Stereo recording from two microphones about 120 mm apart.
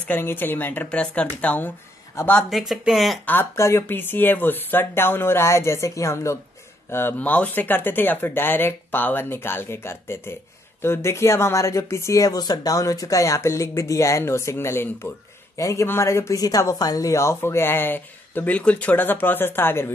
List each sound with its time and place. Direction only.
0.1 s speech: 15° left (ahead or behind)
2.3 s speech: centre (ahead or behind)
3.3 s speech: 20° left (ahead or behind)